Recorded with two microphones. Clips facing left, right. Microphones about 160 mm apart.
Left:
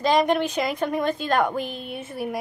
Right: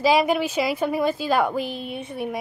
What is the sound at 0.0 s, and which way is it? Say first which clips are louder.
A woman's voice: right 1 dB; 5° right (ahead or behind).